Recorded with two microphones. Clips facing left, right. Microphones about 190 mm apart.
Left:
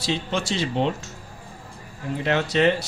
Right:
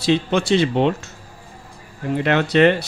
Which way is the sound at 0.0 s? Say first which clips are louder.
Right 8 dB; 60° right (ahead or behind).